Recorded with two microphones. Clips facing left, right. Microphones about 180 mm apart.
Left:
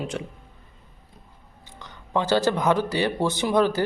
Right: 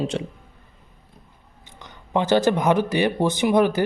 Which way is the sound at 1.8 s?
20° right (ahead or behind).